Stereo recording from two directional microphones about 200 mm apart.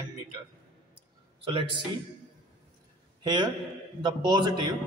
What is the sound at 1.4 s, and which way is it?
Speech, 25° right (ahead or behind).